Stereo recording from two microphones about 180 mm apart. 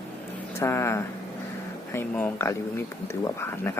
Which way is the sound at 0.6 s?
15° left (ahead or behind).